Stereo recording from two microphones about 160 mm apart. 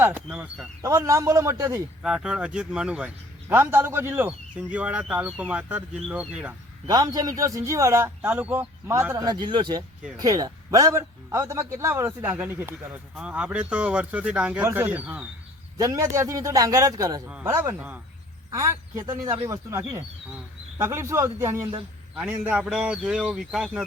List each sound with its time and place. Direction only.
0.0 s a man's voice: 10° right (ahead or behind)
0.8 s a man's voice: 20° right (ahead or behind)
2.0 s a man's voice: 5° right (ahead or behind)
6.8 s a man's voice: 25° right (ahead or behind)
9.2 s a man's voice: 25° right (ahead or behind); by 15.3 s 10° right (ahead or behind)
15.8 s a man's voice: 20° right (ahead or behind); by 23.8 s 5° right (ahead or behind)